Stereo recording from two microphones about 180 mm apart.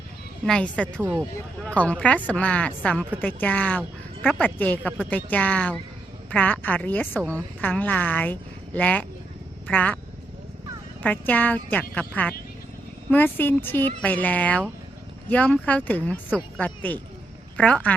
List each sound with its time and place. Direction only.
0.4 s a woman's voice: 5° left (ahead or behind)
11.0 s a woman's voice: 10° left (ahead or behind)